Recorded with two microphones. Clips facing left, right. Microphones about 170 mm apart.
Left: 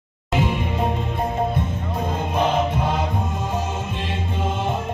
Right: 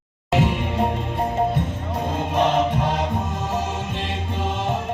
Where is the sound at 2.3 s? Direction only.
75° right (ahead or behind).